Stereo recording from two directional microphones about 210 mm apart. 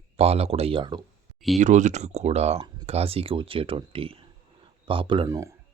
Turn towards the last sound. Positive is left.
turn(degrees=-15)  # may be behind; listen again after turning